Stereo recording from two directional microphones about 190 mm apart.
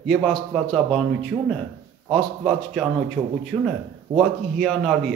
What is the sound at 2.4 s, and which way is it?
Speech, centre (ahead or behind).